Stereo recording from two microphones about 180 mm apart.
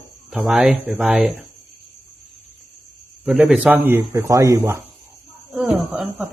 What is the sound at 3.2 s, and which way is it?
Speech, 5° right (ahead or behind).